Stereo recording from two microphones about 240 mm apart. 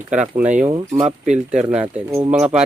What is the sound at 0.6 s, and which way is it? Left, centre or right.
Speech, centre.